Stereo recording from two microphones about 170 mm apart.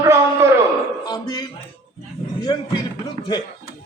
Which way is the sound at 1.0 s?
25° left (ahead or behind).